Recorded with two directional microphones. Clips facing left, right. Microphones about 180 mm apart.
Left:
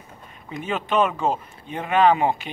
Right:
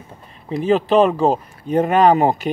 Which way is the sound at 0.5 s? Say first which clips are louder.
Right 10 dB; 35° right (ahead or behind).